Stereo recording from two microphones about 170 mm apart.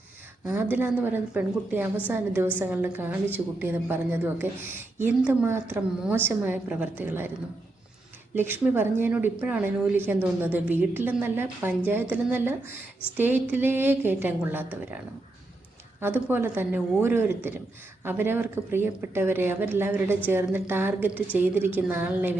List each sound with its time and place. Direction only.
0.4 s a woman's voice: 10° right (ahead or behind)
8.4 s a woman's voice: 10° right (ahead or behind)
16.0 s a woman's voice: 10° right (ahead or behind)